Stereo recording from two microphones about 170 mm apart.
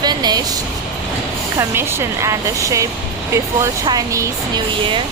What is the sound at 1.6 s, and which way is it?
Speech, 15° right (ahead or behind).